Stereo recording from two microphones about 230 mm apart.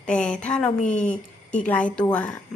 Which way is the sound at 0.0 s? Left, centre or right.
Centre.